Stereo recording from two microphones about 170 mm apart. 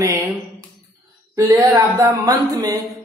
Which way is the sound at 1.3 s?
20° right (ahead or behind).